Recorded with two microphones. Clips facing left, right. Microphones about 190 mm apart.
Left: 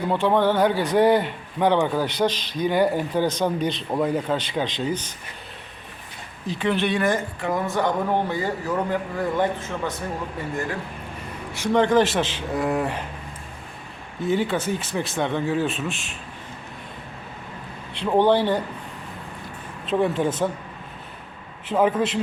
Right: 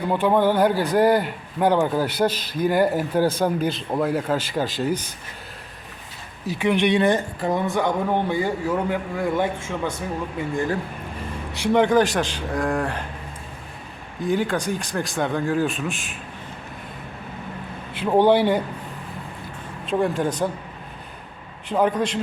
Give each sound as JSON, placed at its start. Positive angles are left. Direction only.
{"t": 0.1, "sound": "a man's voice", "side_deg": -10}
{"t": 6.5, "sound": "a man's voice", "side_deg": -10}
{"t": 11.5, "sound": "a man's voice", "side_deg": -15}
{"t": 11.9, "sound": "speech", "side_deg": 0}
{"t": 14.2, "sound": "speech", "side_deg": 0}
{"t": 17.9, "sound": "a man's voice", "side_deg": -5}
{"t": 19.8, "sound": "speech", "side_deg": 0}
{"t": 21.7, "sound": "speech", "side_deg": 0}